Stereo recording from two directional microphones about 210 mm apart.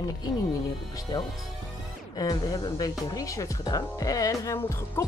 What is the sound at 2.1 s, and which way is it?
Speech, 15° left (ahead or behind).